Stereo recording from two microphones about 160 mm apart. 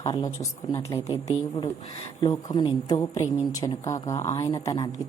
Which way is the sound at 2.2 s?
25° left (ahead or behind).